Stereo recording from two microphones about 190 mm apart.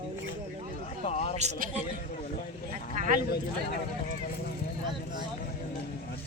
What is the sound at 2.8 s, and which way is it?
Speech, 55° left (ahead or behind).